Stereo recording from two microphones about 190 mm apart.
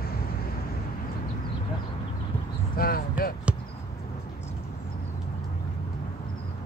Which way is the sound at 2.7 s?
50° left (ahead or behind).